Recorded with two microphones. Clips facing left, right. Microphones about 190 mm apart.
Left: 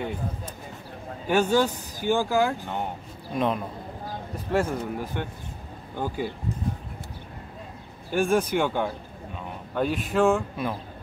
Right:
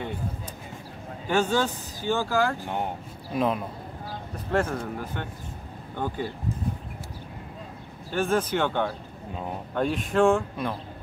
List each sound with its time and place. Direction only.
1.3 s speech: 10° left (ahead or behind)
3.3 s speech: centre (ahead or behind)
4.5 s speech: 10° left (ahead or behind)
8.1 s speech: 10° left (ahead or behind)